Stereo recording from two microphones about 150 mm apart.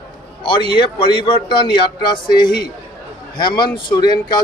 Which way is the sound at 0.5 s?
30° left (ahead or behind).